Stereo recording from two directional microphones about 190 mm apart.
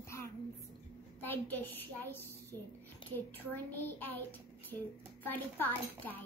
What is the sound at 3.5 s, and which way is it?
A child's voice, 10° left (ahead or behind).